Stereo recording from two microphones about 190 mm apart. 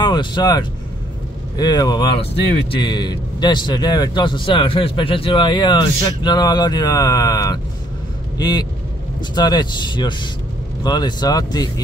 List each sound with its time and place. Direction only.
0.0 s speech: 25° left (ahead or behind)